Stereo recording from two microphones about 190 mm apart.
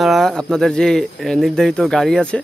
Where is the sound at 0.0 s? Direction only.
Centre (ahead or behind).